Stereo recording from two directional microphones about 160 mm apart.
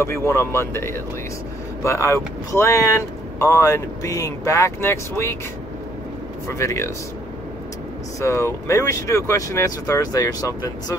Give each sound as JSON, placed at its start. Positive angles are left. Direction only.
{"t": 0.0, "sound": "speech", "side_deg": 15}
{"t": 6.4, "sound": "speech", "side_deg": 20}
{"t": 8.2, "sound": "speech", "side_deg": 15}